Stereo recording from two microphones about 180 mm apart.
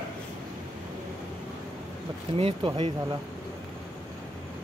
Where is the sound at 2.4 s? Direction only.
30° right (ahead or behind).